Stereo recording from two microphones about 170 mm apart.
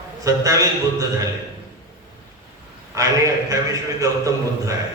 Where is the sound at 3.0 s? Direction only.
20° right (ahead or behind).